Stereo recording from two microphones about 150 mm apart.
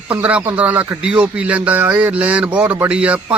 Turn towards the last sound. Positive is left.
turn(degrees=-10)  # may be behind; listen again after turning